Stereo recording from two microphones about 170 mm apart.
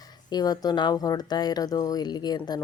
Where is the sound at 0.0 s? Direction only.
25° left (ahead or behind).